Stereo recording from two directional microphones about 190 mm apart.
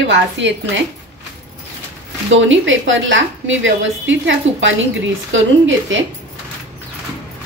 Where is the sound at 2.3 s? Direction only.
80° right.